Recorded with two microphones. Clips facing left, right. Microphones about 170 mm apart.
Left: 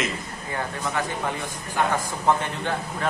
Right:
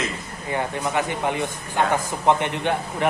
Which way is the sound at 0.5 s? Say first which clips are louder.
Right 4 dB; 20° right (ahead or behind).